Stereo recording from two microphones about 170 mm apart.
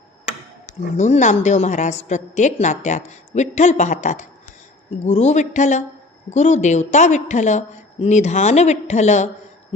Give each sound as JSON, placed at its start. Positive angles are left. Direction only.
{"t": 0.3, "sound": "speech", "side_deg": 45}